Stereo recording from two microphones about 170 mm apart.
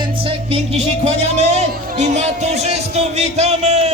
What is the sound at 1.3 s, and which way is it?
Music, 40° right (ahead or behind).